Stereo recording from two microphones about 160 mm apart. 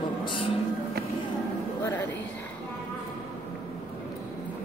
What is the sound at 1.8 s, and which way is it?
Speech, 10° left (ahead or behind).